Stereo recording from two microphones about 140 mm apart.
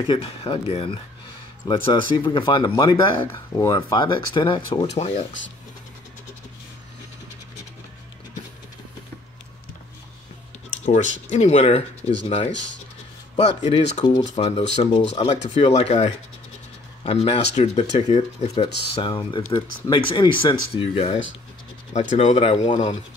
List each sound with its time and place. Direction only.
0.0 s speech: 40° left (ahead or behind)
4.9 s speech: 50° left (ahead or behind)
10.9 s speech: 60° left (ahead or behind)
13.4 s speech: 50° left (ahead or behind)
14.3 s speech: 40° left (ahead or behind)
15.0 s speech: 50° left (ahead or behind)
22.7 s speech: 60° left (ahead or behind)